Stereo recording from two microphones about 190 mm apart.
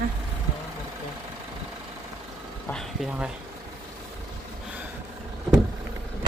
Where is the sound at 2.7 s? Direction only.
5° left (ahead or behind).